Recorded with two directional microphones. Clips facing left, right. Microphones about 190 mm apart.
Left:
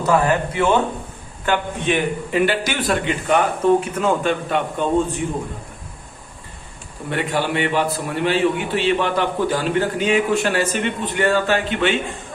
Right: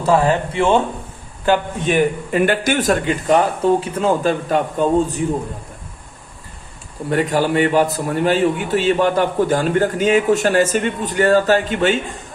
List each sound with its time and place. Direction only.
0.0 s speech: 30° right (ahead or behind)
1.5 s a man's voice: 45° right (ahead or behind)
7.1 s a man's voice: 40° right (ahead or behind)